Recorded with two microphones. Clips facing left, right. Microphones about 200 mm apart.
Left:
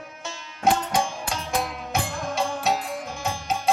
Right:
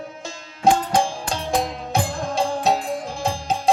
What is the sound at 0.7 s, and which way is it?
Music, 30° right (ahead or behind).